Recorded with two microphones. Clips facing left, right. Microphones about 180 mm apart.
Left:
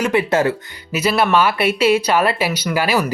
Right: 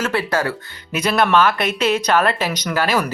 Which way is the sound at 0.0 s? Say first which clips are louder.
Left 4 dB; 15° left (ahead or behind).